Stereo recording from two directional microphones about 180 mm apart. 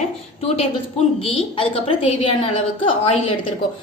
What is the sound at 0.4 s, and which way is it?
A woman's voice, 35° left (ahead or behind).